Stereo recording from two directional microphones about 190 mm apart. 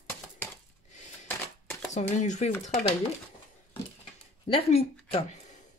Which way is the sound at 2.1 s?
40° left (ahead or behind).